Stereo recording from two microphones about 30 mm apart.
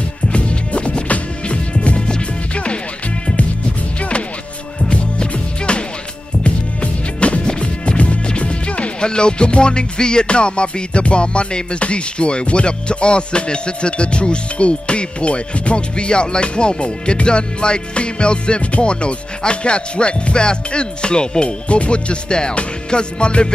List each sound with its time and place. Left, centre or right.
0.3 s music: left
4.8 s music: left
7.4 s music: left